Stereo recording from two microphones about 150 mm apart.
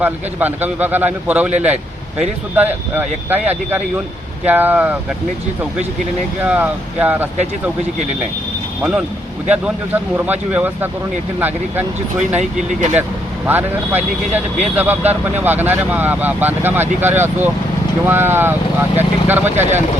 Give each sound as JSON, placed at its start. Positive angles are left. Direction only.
{"t": 0.0, "sound": "speech", "side_deg": -10}
{"t": 6.4, "sound": "speech", "side_deg": -10}
{"t": 8.8, "sound": "speech", "side_deg": -10}
{"t": 12.4, "sound": "speech", "side_deg": -55}
{"t": 13.5, "sound": "speech", "side_deg": -10}